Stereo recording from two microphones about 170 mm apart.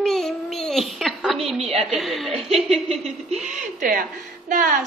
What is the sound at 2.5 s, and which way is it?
Speech, 35° right (ahead or behind).